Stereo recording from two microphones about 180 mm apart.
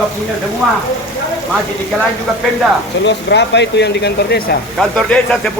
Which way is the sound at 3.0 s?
75° left (ahead or behind).